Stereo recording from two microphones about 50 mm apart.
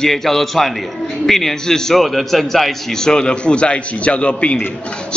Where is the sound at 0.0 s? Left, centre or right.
Centre.